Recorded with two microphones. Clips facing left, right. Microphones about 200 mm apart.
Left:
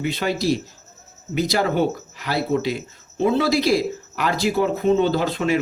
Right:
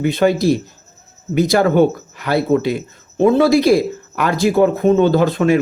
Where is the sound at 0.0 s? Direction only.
50° right (ahead or behind).